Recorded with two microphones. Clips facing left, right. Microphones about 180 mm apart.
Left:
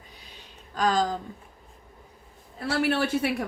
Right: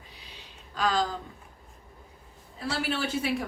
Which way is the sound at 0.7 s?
45° left (ahead or behind).